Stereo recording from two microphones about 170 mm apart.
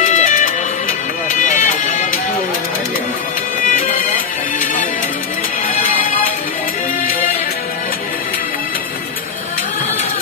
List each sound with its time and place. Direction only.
0.0 s music: 50° left (ahead or behind)